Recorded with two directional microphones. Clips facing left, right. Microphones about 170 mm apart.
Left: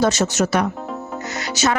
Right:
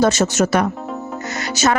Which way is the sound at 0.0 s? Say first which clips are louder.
Right 2 dB; 50° right (ahead or behind).